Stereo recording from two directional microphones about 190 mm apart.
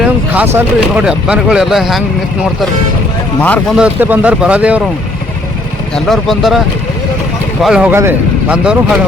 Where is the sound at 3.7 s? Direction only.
5° right (ahead or behind).